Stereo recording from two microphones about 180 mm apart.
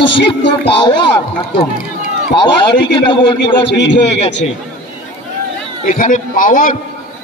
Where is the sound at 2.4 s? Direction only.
25° left (ahead or behind).